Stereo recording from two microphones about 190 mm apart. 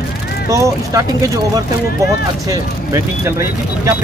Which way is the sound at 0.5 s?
15° right (ahead or behind).